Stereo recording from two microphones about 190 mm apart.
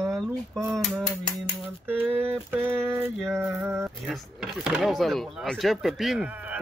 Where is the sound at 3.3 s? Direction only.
5° right (ahead or behind).